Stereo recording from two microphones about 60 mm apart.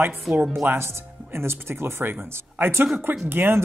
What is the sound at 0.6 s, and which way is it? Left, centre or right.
Speech, right.